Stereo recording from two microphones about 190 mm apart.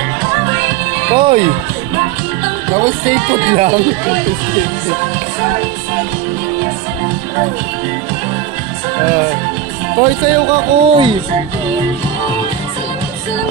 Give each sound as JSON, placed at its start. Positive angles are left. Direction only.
{"t": 1.1, "sound": "speech", "side_deg": -25}
{"t": 2.8, "sound": "speech", "side_deg": -25}
{"t": 9.9, "sound": "speech", "side_deg": -20}